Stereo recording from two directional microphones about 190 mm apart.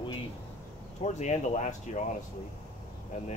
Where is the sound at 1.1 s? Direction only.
40° left (ahead or behind).